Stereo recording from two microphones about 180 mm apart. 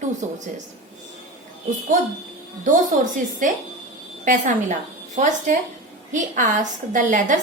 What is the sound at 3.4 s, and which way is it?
A woman's voice, 45° right (ahead or behind).